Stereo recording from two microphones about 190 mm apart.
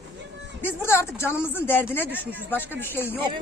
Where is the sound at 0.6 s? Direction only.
15° left (ahead or behind).